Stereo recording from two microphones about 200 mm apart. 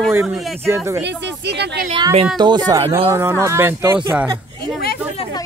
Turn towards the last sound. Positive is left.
turn(degrees=-5)  # may be behind; listen again after turning